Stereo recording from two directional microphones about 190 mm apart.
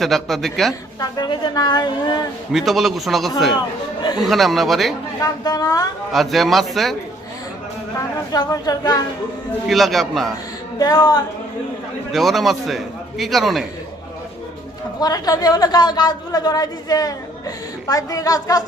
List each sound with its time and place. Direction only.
0.0 s a man's voice: centre (ahead or behind)
0.9 s a man's voice: 20° left (ahead or behind)
2.5 s a man's voice: centre (ahead or behind)
5.2 s a man's voice: 20° left (ahead or behind)
6.1 s a man's voice: centre (ahead or behind)
8.3 s a man's voice: 20° left (ahead or behind)
9.6 s a man's voice: centre (ahead or behind)
10.8 s a man's voice: 20° left (ahead or behind)
12.1 s a man's voice: centre (ahead or behind)
15.0 s a man's voice: 20° left (ahead or behind)